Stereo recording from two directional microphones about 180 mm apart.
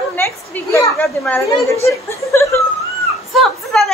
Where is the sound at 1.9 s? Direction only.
15° left (ahead or behind).